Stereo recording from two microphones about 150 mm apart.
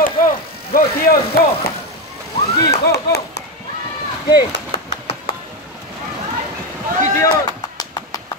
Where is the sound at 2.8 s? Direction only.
90° left.